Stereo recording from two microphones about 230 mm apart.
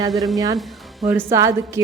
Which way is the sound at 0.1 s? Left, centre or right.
Centre.